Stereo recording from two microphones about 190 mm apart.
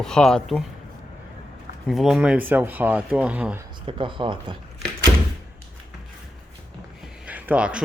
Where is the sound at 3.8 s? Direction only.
25° right (ahead or behind).